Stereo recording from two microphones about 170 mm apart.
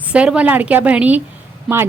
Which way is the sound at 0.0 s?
5° right (ahead or behind).